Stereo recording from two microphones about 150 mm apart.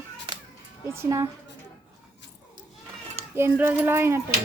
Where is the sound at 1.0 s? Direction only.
25° right (ahead or behind).